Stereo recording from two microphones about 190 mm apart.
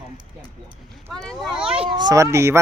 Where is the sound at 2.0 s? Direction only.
20° right (ahead or behind).